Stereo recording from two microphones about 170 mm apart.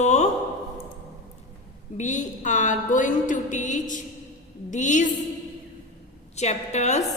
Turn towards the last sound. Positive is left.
turn(degrees=40)  # may be behind; listen again after turning